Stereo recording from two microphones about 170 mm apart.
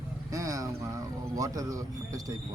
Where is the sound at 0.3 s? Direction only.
20° right (ahead or behind).